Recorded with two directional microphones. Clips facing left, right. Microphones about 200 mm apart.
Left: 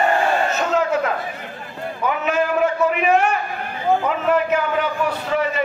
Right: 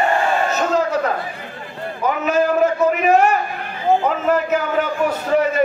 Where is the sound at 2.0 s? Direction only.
40° right (ahead or behind).